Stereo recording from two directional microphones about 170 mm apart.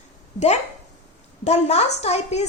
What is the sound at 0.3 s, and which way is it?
A woman's voice, 40° left (ahead or behind).